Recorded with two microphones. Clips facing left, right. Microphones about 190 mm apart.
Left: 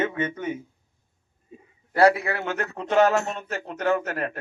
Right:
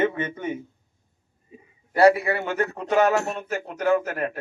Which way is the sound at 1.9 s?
10° right (ahead or behind).